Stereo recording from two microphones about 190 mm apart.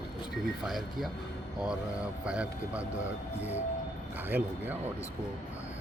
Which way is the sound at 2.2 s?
5° right (ahead or behind).